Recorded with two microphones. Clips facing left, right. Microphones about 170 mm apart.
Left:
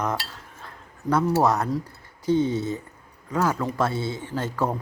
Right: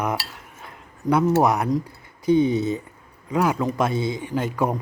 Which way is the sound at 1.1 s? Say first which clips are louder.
Right 2 dB; 15° right (ahead or behind).